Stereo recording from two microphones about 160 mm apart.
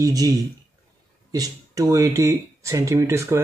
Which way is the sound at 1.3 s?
20° right (ahead or behind).